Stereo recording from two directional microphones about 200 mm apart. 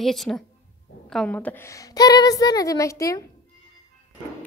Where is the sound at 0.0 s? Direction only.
Centre (ahead or behind).